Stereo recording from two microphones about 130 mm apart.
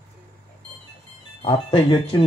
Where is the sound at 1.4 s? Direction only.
45° left (ahead or behind).